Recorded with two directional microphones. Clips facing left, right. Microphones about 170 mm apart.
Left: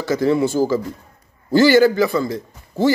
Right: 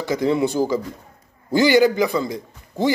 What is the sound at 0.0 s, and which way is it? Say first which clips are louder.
A man's voice: left 2 dB; 15° right (ahead or behind).